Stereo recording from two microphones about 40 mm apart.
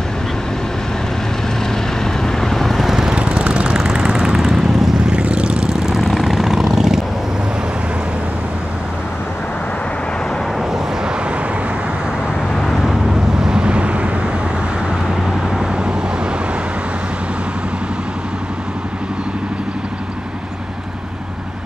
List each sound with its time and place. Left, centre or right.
2.2 s vehicle: centre
3.2 s vehicle: right; by 4.9 s centre
5.2 s vehicle: right
5.9 s vehicle: centre
12.5 s vehicle: centre
13.0 s vehicle: centre; by 14.1 s right
15.0 s vehicle: centre
15.6 s vehicle: centre